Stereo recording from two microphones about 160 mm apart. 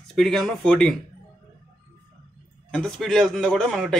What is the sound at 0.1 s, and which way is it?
Speech, centre (ahead or behind).